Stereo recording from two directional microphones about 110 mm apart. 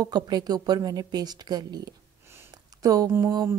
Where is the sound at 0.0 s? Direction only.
40° right (ahead or behind).